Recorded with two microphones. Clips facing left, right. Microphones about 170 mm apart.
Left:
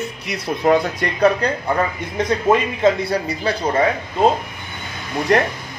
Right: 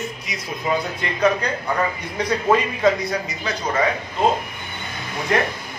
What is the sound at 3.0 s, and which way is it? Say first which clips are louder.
Speech: left 5 dB; 30° left (ahead or behind).